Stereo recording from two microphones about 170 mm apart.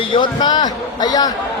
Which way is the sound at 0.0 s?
30° left (ahead or behind).